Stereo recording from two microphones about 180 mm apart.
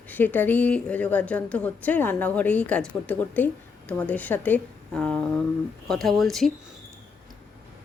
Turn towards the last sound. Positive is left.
turn(degrees=0)  # may be behind; listen again after turning